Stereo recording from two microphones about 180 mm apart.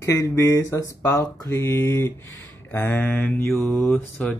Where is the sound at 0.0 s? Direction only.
15° left (ahead or behind).